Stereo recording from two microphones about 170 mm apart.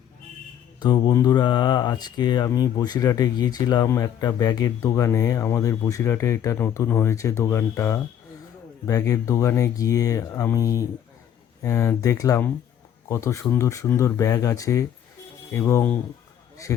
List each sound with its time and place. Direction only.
0.8 s speech: 25° left (ahead or behind); by 16.0 s 10° left (ahead or behind)